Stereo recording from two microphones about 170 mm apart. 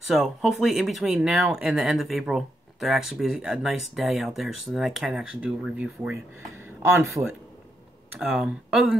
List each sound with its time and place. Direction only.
0.0 s speech: centre (ahead or behind)
7.2 s a man's voice: 20° right (ahead or behind)
8.2 s speech: 5° right (ahead or behind)